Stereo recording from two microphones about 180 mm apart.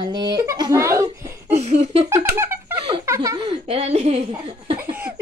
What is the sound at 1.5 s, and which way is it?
Speech, 35° right (ahead or behind).